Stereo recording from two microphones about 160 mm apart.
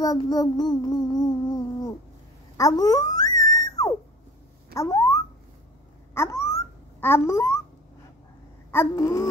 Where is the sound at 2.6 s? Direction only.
20° left (ahead or behind).